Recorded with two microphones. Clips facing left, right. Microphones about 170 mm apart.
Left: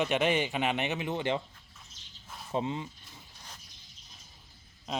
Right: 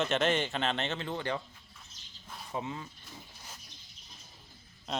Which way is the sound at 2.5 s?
25° left (ahead or behind).